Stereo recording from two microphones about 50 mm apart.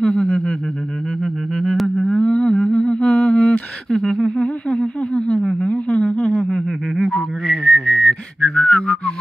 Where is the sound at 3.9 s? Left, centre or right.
Centre.